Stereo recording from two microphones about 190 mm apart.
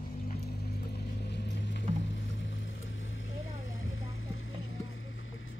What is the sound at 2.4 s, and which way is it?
Boat, 75° left (ahead or behind).